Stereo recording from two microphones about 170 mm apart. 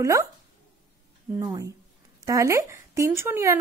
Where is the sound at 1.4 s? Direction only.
20° right (ahead or behind).